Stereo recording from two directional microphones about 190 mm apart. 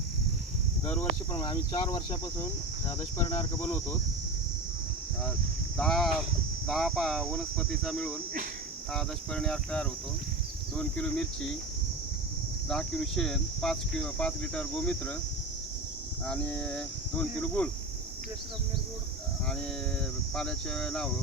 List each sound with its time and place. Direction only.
0.9 s speech: 15° left (ahead or behind)
3.6 s speech: 10° left (ahead or behind)
5.7 s speech: 5° left (ahead or behind)
12.6 s speech: 5° left (ahead or behind)
16.2 s speech: 5° left (ahead or behind)
20.3 s speech: 5° left (ahead or behind)